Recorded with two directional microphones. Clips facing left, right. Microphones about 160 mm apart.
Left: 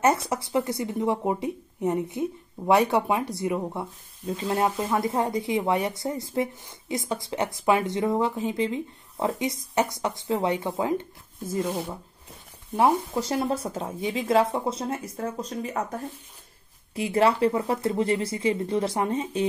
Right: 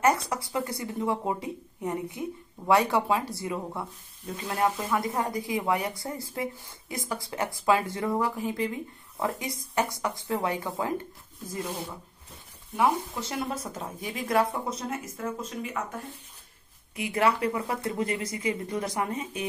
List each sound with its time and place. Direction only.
0.0 s speech: 25° left (ahead or behind)
12.7 s speech: 40° left (ahead or behind)